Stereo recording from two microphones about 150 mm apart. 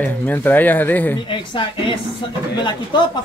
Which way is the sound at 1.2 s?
35° left (ahead or behind).